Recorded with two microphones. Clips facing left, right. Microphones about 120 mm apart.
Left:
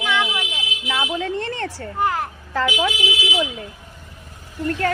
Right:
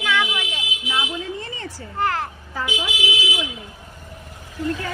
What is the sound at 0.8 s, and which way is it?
Speech, 70° left (ahead or behind).